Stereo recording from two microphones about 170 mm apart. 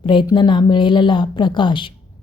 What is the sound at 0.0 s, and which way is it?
A woman's voice, 30° left (ahead or behind).